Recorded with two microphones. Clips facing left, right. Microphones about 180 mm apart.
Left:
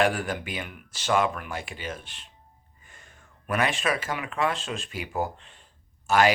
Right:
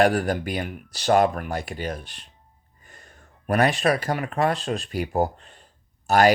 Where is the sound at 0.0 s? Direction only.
40° right (ahead or behind).